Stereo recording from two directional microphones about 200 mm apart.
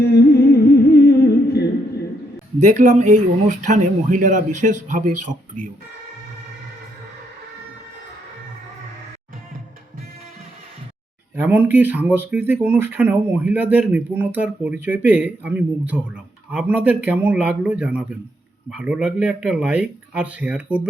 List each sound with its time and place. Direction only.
0.0 s humming: 55° left (ahead or behind)
2.6 s speech: 35° right (ahead or behind)
11.3 s speech: 10° right (ahead or behind)